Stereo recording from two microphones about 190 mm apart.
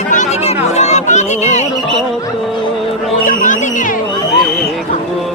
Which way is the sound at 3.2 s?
45° left (ahead or behind).